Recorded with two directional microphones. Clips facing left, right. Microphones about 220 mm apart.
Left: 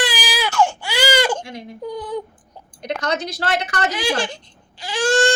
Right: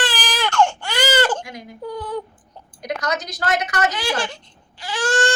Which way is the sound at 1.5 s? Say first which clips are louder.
Left 2 dB; 30° left (ahead or behind).